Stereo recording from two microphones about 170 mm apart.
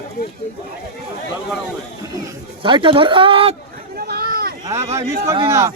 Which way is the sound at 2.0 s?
20° right (ahead or behind).